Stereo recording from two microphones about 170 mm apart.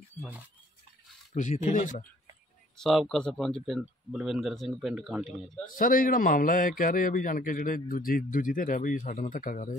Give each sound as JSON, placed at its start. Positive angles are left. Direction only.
{"t": 1.3, "sound": "a man's voice", "side_deg": 45}
{"t": 2.8, "sound": "speech", "side_deg": 0}
{"t": 5.7, "sound": "a man's voice", "side_deg": 55}